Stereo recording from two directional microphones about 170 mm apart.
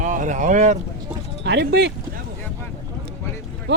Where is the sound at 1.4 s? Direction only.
85° right.